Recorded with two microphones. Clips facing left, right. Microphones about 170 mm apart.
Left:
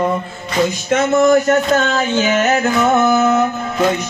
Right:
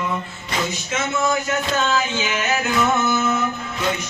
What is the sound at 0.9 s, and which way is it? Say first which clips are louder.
Music: left 11 dB; 55° left (ahead or behind).